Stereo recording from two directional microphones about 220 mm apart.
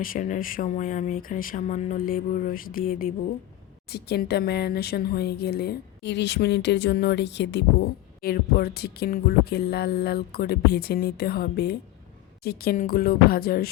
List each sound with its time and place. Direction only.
0.0 s speech: 35° left (ahead or behind)